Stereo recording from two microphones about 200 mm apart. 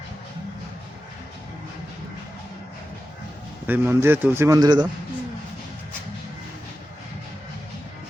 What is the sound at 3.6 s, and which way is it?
Speech, 10° right (ahead or behind).